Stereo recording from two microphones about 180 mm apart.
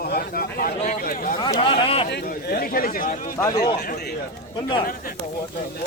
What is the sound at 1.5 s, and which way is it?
Speech, 30° left (ahead or behind).